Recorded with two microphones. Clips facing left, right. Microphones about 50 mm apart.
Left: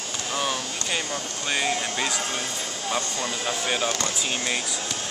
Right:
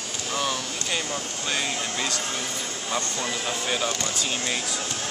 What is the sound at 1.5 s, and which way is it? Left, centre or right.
Speech, centre.